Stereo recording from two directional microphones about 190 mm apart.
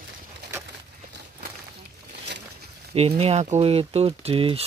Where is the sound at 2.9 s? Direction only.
30° right (ahead or behind).